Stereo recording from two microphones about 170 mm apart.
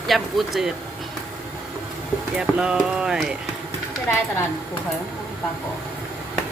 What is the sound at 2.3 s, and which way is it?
Speech, 5° right (ahead or behind).